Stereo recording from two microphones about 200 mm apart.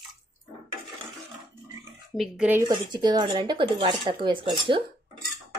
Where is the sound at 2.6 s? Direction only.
20° right (ahead or behind).